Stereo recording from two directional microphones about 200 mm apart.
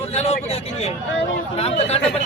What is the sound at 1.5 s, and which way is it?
Speech, 30° left (ahead or behind).